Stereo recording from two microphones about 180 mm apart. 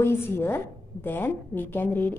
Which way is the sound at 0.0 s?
15° left (ahead or behind).